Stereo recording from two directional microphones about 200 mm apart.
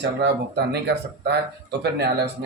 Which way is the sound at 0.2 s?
55° right (ahead or behind).